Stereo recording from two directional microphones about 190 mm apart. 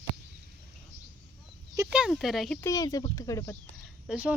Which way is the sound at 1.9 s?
5° right (ahead or behind).